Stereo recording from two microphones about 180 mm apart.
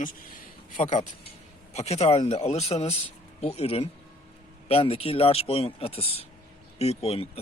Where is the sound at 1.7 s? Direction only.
35° left (ahead or behind).